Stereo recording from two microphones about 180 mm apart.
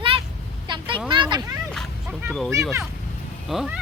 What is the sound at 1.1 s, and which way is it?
Speech, 25° right (ahead or behind).